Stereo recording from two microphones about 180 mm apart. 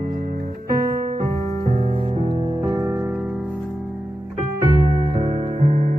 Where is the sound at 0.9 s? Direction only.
50° right (ahead or behind).